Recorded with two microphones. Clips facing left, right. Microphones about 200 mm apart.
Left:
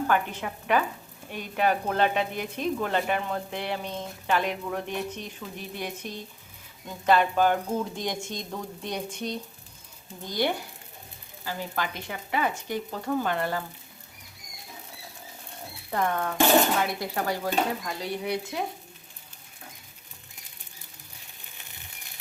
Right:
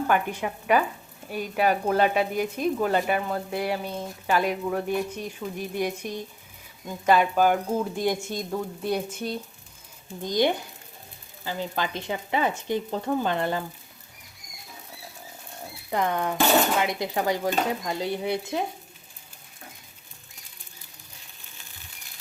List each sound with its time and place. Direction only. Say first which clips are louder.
0.1 s speech: right 2 dB; 10° right (ahead or behind)
10.2 s speech: right 4 dB; 20° right (ahead or behind)
15.9 s speech: right 2 dB; 15° right (ahead or behind)